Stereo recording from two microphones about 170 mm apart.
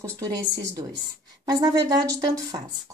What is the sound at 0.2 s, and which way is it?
Speech, 20° right (ahead or behind).